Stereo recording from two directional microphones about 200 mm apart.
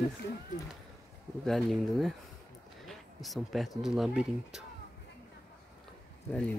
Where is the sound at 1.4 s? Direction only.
Centre (ahead or behind).